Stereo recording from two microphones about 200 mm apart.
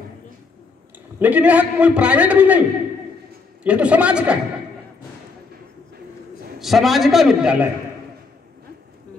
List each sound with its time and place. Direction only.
1.2 s a man's voice: 5° right (ahead or behind)
3.6 s a man's voice: 5° right (ahead or behind)
6.6 s a man's voice: centre (ahead or behind)